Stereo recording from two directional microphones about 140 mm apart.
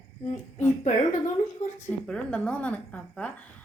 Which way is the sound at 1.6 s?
60° left (ahead or behind).